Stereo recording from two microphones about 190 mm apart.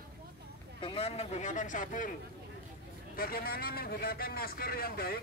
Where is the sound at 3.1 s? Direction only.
50° left (ahead or behind).